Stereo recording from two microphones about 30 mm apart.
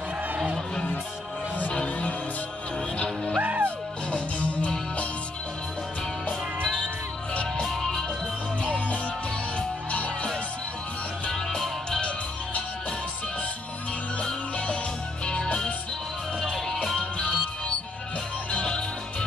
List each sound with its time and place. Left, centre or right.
1.7 s music: left
3.3 s music: right
4.1 s music: left
7.6 s music: centre
8.6 s music: left
11.3 s music: centre
15.2 s music: left
16.5 s music: centre
17.0 s music: left
18.7 s music: left